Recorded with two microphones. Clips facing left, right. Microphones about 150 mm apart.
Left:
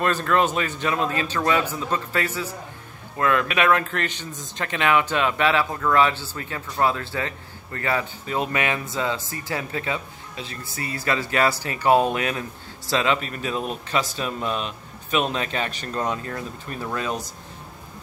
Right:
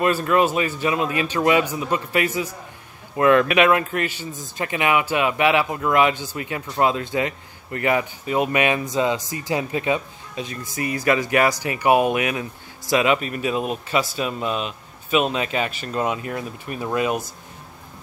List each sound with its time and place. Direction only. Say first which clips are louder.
0.0 s speech: right 3 dB; 10° right (ahead or behind)